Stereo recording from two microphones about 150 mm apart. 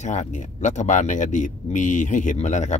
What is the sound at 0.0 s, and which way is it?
Speech, 50° left (ahead or behind).